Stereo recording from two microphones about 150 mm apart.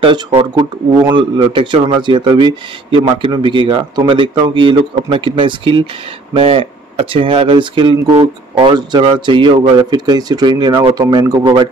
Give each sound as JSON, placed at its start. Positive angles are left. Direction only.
{"t": 0.0, "sound": "speech", "side_deg": -35}